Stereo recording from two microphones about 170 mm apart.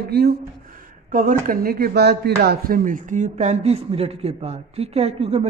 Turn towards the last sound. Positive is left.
turn(degrees=-35)  # may be behind; listen again after turning